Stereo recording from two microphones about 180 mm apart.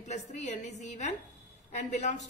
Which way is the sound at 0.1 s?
40° left (ahead or behind).